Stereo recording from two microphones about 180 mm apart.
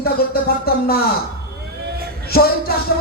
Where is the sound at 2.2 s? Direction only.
60° left (ahead or behind).